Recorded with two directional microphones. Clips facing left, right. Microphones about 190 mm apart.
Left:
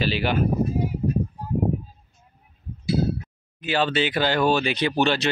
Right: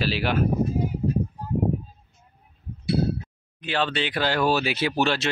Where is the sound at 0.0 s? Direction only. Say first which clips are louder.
Left 1 dB; centre (ahead or behind).